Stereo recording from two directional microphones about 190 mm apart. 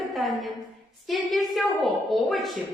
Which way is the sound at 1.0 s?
Centre (ahead or behind).